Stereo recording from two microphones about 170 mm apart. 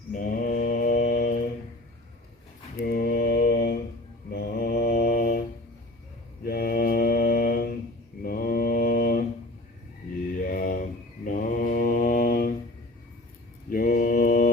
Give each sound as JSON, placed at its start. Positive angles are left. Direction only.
{"t": 0.1, "sound": "mantra", "side_deg": 55}
{"t": 2.7, "sound": "mantra", "side_deg": 65}
{"t": 6.4, "sound": "mantra", "side_deg": 60}
{"t": 10.4, "sound": "mantra", "side_deg": 55}
{"t": 13.7, "sound": "mantra", "side_deg": 55}